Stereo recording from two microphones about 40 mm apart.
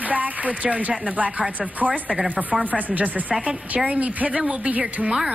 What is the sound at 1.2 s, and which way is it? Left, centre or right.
Speech, right.